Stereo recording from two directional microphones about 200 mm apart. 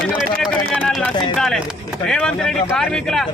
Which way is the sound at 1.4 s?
Centre (ahead or behind).